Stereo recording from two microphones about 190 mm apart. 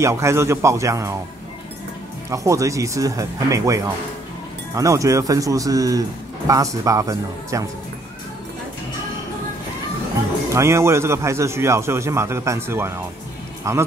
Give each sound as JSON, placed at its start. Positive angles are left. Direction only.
{"t": 0.0, "sound": "a man's voice", "side_deg": -15}
{"t": 2.2, "sound": "a man's voice", "side_deg": -15}
{"t": 10.5, "sound": "a man's voice", "side_deg": -15}